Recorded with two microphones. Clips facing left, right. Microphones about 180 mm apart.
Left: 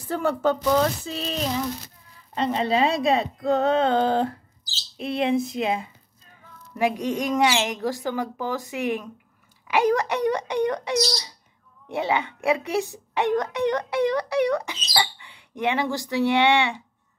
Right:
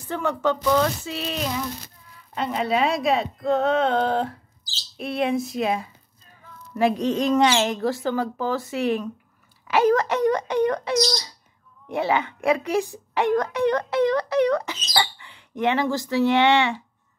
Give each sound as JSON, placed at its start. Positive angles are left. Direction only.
{"t": 0.1, "sound": "speech", "side_deg": 35}
{"t": 6.8, "sound": "speech", "side_deg": 15}